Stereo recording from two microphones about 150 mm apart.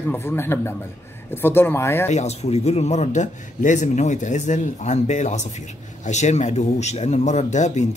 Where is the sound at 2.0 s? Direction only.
50° left (ahead or behind).